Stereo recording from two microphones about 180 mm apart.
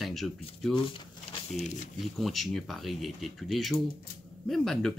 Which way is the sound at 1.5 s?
40° left (ahead or behind).